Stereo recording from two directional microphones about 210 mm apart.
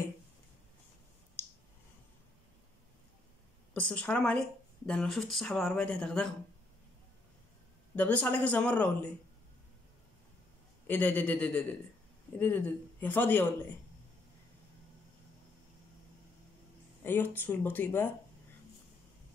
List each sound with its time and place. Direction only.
3.7 s speech: 5° left (ahead or behind)
7.9 s speech: 5° left (ahead or behind)
10.9 s speech: 10° left (ahead or behind)
17.0 s speech: 10° left (ahead or behind)